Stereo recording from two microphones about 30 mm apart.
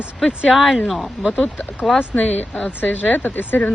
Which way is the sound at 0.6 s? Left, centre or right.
Centre.